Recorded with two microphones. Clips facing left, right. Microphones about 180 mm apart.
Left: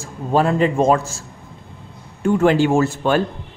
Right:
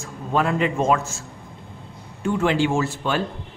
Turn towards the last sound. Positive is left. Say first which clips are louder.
# left 6 dB
turn(degrees=45)  # may be behind; listen again after turning